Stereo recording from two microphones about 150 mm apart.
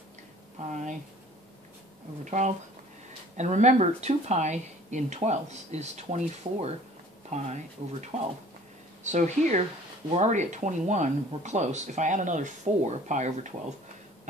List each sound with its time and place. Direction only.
0.7 s speech: 55° right (ahead or behind)
2.2 s speech: 55° right (ahead or behind)